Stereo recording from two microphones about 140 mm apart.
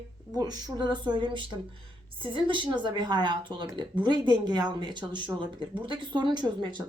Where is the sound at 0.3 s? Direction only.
30° right (ahead or behind).